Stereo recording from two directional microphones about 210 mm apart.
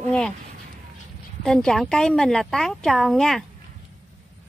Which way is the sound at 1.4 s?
5° left (ahead or behind).